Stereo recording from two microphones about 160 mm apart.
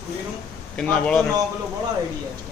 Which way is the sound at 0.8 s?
5° left (ahead or behind).